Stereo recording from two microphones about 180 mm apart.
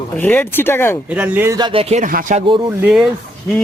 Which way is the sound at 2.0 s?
50° right (ahead or behind).